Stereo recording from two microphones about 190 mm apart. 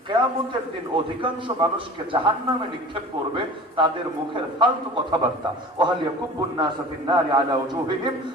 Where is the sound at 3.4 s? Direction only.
25° right (ahead or behind).